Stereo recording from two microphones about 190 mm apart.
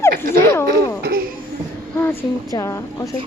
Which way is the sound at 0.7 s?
50° right (ahead or behind).